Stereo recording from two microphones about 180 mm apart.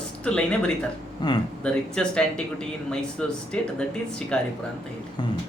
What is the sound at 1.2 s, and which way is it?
Speech, 25° left (ahead or behind).